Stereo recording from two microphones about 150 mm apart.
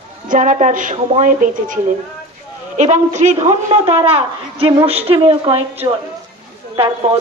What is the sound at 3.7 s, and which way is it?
A woman's voice, 40° right (ahead or behind).